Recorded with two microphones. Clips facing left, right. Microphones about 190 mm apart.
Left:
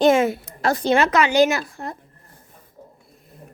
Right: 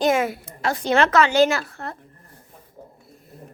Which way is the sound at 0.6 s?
40° left (ahead or behind).